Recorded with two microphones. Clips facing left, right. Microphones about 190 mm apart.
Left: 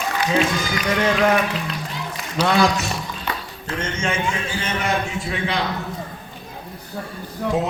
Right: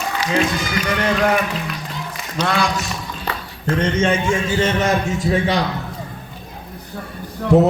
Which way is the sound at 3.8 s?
30° right (ahead or behind).